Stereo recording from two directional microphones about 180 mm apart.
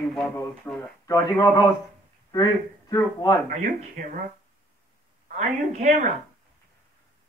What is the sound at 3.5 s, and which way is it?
Speech, 45° right (ahead or behind).